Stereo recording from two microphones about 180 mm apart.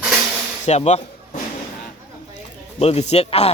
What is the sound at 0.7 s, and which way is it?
Speech, 40° left (ahead or behind).